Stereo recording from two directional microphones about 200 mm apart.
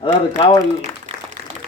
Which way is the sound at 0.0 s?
25° left (ahead or behind).